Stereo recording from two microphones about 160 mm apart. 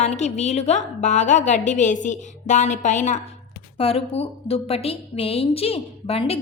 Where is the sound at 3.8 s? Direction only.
35° left (ahead or behind).